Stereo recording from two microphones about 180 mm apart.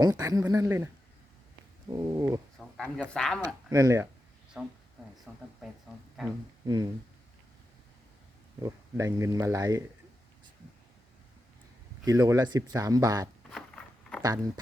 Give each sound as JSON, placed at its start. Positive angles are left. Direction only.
{"t": 0.0, "sound": "speech", "side_deg": -20}
{"t": 1.9, "sound": "speech", "side_deg": -20}
{"t": 2.6, "sound": "speech", "side_deg": 5}
{"t": 3.4, "sound": "speech", "side_deg": -20}
{"t": 4.6, "sound": "speech", "side_deg": -5}
{"t": 6.2, "sound": "speech", "side_deg": 0}
{"t": 8.6, "sound": "speech", "side_deg": -20}
{"t": 12.0, "sound": "speech", "side_deg": -20}
{"t": 13.5, "sound": "a sound", "side_deg": 5}
{"t": 14.2, "sound": "speech", "side_deg": -20}